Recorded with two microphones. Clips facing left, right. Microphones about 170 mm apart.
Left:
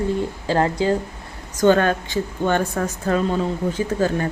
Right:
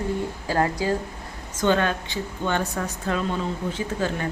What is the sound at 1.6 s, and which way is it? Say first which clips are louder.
A woman's voice: left 6 dB; 45° left (ahead or behind).